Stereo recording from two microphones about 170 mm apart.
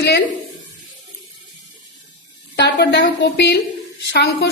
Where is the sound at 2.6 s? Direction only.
85° left.